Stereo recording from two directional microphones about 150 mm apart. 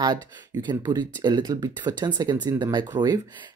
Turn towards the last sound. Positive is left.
turn(degrees=-30)  # may be behind; listen again after turning